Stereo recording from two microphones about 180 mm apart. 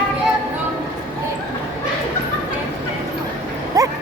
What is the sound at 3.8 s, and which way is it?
Dog, 20° right (ahead or behind).